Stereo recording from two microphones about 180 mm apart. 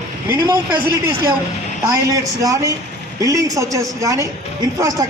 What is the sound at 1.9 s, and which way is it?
A man's voice, 20° right (ahead or behind).